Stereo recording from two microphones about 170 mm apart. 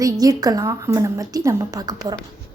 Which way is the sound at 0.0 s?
20° right (ahead or behind).